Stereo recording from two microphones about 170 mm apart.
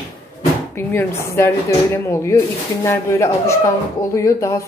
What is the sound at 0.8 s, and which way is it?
Speech, 10° left (ahead or behind).